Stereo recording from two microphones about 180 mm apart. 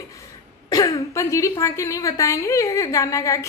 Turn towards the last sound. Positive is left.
turn(degrees=15)  # may be behind; listen again after turning